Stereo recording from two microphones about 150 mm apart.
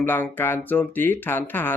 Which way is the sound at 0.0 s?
15° left (ahead or behind).